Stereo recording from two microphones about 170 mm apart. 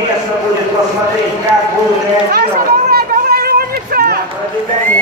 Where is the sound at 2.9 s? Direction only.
65° right (ahead or behind).